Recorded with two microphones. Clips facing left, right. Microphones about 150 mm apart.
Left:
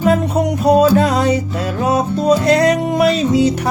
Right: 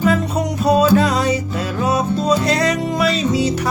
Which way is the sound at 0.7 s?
55° left (ahead or behind).